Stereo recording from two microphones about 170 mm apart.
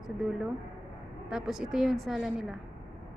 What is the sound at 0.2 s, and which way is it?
A woman's voice, 5° right (ahead or behind).